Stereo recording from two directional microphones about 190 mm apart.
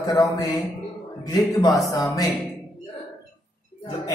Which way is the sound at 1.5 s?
20° left (ahead or behind).